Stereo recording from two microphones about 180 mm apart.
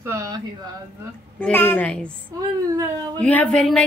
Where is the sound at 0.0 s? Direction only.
20° right (ahead or behind).